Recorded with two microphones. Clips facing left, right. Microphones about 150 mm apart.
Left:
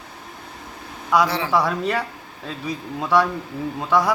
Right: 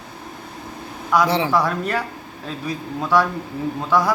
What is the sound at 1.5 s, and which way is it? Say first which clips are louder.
A man's voice: even; centre (ahead or behind).